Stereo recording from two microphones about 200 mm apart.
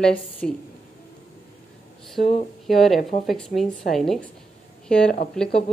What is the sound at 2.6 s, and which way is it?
A woman's voice, centre (ahead or behind).